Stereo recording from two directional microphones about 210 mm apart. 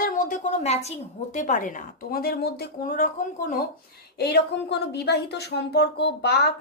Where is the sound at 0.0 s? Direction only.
40° left (ahead or behind).